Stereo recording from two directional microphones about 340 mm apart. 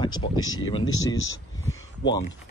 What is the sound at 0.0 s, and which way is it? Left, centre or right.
Speech, centre.